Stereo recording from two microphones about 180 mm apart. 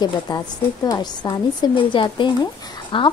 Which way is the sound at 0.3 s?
25° left (ahead or behind).